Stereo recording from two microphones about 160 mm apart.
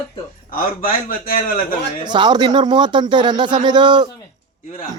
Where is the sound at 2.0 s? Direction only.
25° right (ahead or behind).